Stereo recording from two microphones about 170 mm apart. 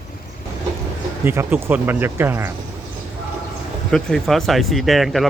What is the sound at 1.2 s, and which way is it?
Speech, 15° right (ahead or behind).